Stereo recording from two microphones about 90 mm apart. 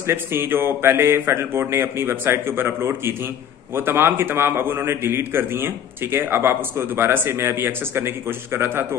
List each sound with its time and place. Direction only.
0.0 s a man's voice: 25° right (ahead or behind)